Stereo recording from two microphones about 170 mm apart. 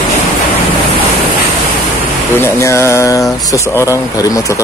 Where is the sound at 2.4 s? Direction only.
15° left (ahead or behind).